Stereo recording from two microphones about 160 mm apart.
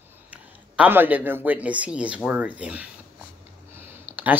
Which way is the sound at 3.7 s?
15° right (ahead or behind).